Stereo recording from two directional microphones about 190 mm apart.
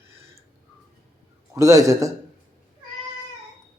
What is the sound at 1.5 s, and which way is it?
Speech, 15° right (ahead or behind).